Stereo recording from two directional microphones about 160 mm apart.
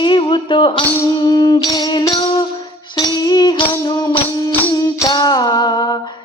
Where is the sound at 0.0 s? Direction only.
30° left (ahead or behind).